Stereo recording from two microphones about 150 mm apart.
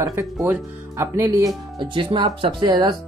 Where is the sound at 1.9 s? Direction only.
35° right (ahead or behind).